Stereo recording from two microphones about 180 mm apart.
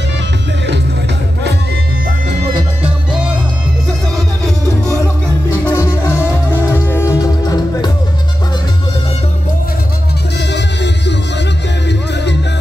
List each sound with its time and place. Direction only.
5.7 s music: 15° left (ahead or behind)
10.5 s music: 75° left (ahead or behind)